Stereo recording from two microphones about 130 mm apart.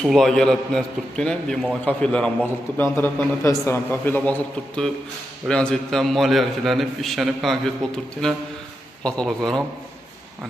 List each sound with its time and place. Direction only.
0.0 s a man's voice: 5° left (ahead or behind)